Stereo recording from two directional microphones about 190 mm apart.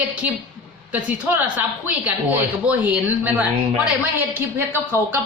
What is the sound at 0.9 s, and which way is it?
A woman's voice, 10° right (ahead or behind).